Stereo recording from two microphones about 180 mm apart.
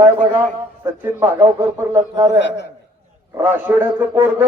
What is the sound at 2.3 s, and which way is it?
Speech, 70° left (ahead or behind).